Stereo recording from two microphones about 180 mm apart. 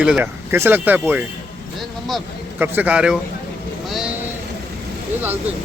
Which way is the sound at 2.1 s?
Centre (ahead or behind).